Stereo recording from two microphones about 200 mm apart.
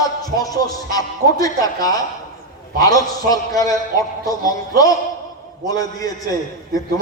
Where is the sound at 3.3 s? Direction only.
20° left (ahead or behind).